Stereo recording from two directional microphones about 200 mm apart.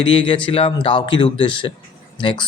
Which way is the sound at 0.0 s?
25° left (ahead or behind).